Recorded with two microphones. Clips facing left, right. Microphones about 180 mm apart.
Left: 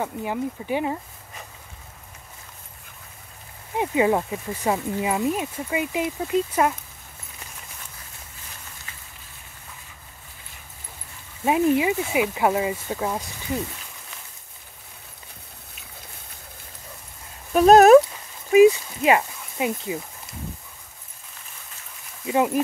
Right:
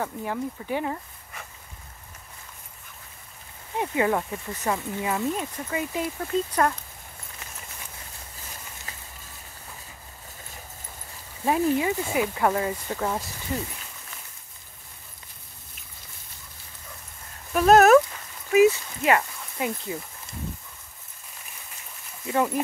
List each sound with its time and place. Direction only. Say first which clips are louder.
0.0 s speech: left 3 dB; 15° left (ahead or behind)
3.7 s speech: left 4 dB; 20° left (ahead or behind)
11.4 s speech: left 3 dB; 15° left (ahead or behind)
17.5 s a sound: left 4 dB; 20° left (ahead or behind)
22.2 s speech: left 3 dB; 15° left (ahead or behind)